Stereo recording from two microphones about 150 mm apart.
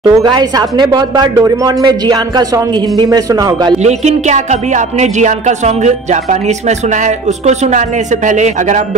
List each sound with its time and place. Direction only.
0.0 s speech: 25° right (ahead or behind)
3.8 s a woman's voice: 50° right (ahead or behind)
7.4 s a woman's voice: 50° right (ahead or behind)